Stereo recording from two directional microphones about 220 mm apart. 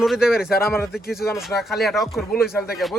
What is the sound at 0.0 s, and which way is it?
Speech, centre (ahead or behind).